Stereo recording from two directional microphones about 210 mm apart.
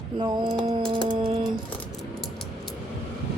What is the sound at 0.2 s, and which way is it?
Speech, 20° right (ahead or behind).